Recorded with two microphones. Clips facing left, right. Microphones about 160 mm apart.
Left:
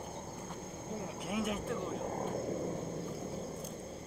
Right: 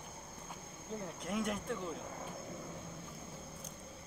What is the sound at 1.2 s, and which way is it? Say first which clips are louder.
Speech: left 1 dB; 5° left (ahead or behind).